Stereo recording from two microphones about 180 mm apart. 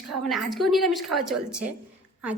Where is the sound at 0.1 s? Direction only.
Centre (ahead or behind).